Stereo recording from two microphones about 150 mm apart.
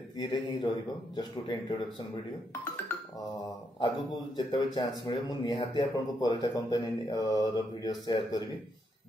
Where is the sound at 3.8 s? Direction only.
30° left (ahead or behind).